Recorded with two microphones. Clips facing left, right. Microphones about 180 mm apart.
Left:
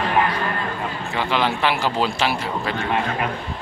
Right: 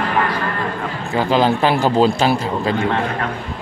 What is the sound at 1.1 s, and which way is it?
Speech, 40° right (ahead or behind).